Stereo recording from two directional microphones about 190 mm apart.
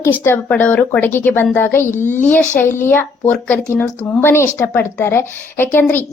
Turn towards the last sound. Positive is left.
turn(degrees=10)  # may be behind; listen again after turning